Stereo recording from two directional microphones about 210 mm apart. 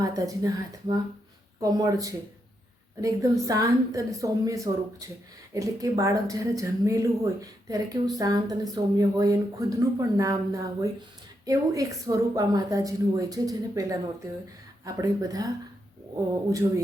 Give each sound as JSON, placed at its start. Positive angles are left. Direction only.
{"t": 0.0, "sound": "a woman's voice", "side_deg": -15}
{"t": 3.4, "sound": "a woman's voice", "side_deg": -15}